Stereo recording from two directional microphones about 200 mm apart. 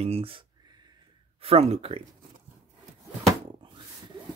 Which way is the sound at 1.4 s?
30° right (ahead or behind).